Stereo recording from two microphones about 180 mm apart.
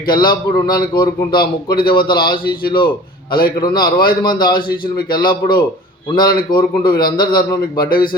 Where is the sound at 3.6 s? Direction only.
25° left (ahead or behind).